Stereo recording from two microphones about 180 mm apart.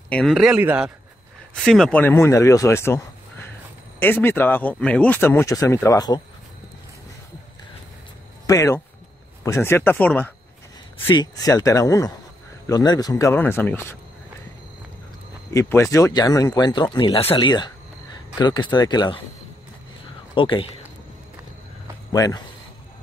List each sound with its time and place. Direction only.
0.1 s a man's voice: centre (ahead or behind)
4.0 s speech: 10° left (ahead or behind)
8.5 s speech: 15° left (ahead or behind)
11.1 s speech: 25° left (ahead or behind)
15.5 s speech: 15° left (ahead or behind)
20.3 s speech: 25° left (ahead or behind)
22.1 s a man's voice: 20° left (ahead or behind)